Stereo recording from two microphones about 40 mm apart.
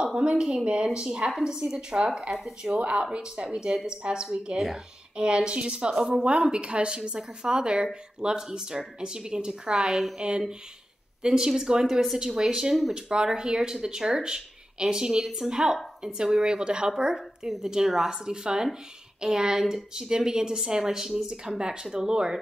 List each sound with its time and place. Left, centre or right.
0.0 s speech: right
2.8 s speech: right
3.2 s speech: centre
9.8 s speech: centre
11.2 s speech: centre